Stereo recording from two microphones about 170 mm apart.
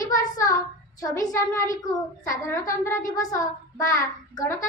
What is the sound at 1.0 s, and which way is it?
A child's voice, 20° left (ahead or behind).